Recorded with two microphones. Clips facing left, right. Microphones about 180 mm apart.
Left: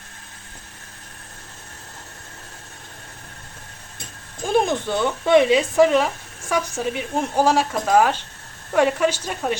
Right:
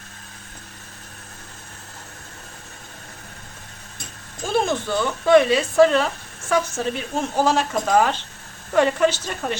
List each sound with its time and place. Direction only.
4.4 s speech: 15° left (ahead or behind)